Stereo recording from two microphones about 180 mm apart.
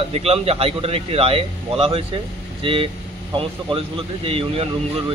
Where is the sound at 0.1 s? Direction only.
35° right (ahead or behind).